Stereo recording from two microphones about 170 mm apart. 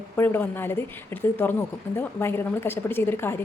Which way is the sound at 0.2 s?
10° left (ahead or behind).